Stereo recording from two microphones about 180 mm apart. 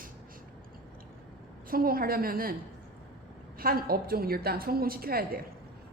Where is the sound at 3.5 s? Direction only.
55° right (ahead or behind).